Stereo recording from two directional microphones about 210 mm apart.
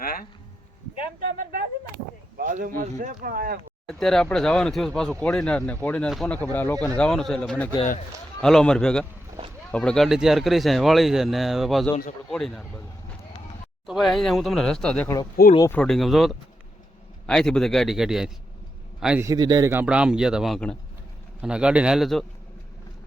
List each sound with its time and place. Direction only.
0.0 s a sound: 45° left (ahead or behind)
2.4 s speech: 40° right (ahead or behind)
3.8 s speech: centre (ahead or behind)
13.8 s speech: centre (ahead or behind)
15.8 s speech: centre (ahead or behind)